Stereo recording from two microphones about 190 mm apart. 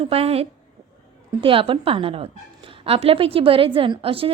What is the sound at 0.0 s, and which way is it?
A woman's voice, 30° right (ahead or behind).